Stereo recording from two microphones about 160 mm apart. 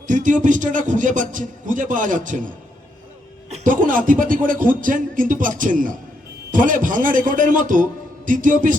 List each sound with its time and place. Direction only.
0.1 s a man's voice: 55° right (ahead or behind)
3.5 s speech: 55° right (ahead or behind)